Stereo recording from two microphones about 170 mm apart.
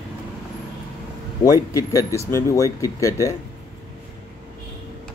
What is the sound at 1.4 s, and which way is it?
Speech, 20° left (ahead or behind).